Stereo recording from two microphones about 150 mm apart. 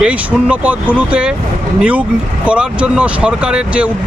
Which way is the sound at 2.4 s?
5° right (ahead or behind).